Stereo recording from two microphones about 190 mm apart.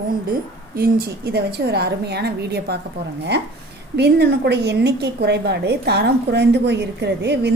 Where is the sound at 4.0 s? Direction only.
60° right (ahead or behind).